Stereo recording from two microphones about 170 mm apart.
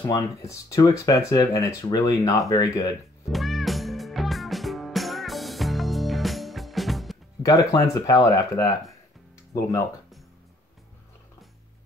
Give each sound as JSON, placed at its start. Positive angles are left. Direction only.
{"t": 0.0, "sound": "speech", "side_deg": 20}
{"t": 3.3, "sound": "music", "side_deg": 0}
{"t": 7.4, "sound": "speech", "side_deg": 20}